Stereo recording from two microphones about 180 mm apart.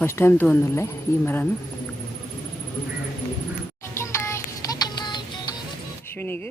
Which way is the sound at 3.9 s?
15° left (ahead or behind).